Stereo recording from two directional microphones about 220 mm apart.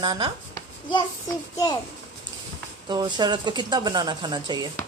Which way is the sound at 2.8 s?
20° right (ahead or behind).